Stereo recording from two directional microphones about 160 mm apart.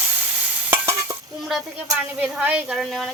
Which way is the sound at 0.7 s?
15° right (ahead or behind).